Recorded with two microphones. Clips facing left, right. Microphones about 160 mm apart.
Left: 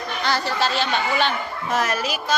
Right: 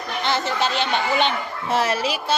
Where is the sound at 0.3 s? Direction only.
20° right (ahead or behind).